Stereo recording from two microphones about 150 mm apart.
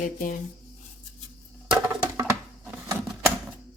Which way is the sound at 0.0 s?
60° left (ahead or behind).